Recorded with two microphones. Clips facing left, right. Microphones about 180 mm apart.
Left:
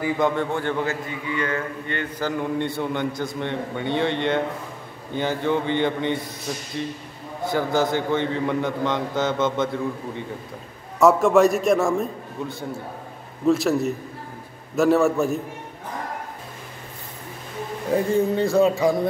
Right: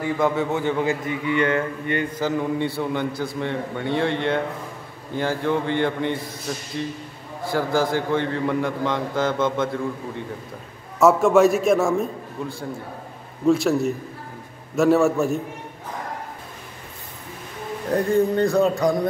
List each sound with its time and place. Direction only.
0.0 s a man's voice: 5° right (ahead or behind)
1.0 s a man's voice: 25° right (ahead or behind)
1.9 s a man's voice: 10° right (ahead or behind)
7.5 s a man's voice: centre (ahead or behind)
13.5 s a man's voice: centre (ahead or behind)
17.8 s a man's voice: centre (ahead or behind)